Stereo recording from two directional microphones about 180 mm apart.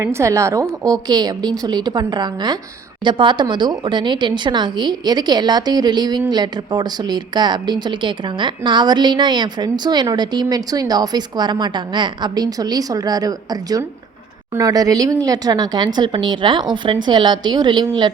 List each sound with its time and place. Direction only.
0.0 s a woman's voice: 15° right (ahead or behind)